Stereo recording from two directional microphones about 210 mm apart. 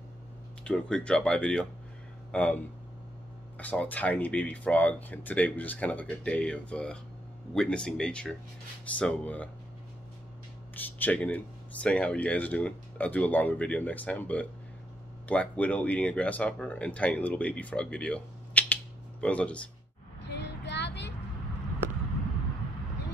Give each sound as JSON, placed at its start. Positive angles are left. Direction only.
{"t": 0.7, "sound": "speech", "side_deg": 5}
{"t": 10.7, "sound": "speech", "side_deg": 10}
{"t": 20.2, "sound": "child singing", "side_deg": 55}